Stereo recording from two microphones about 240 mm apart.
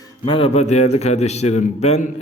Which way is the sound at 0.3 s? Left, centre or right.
Left.